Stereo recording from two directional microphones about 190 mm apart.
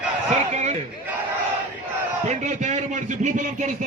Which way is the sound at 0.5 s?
35° right (ahead or behind).